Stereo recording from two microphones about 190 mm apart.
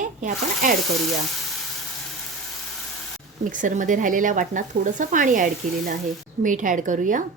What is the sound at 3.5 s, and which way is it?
Speech, 40° right (ahead or behind).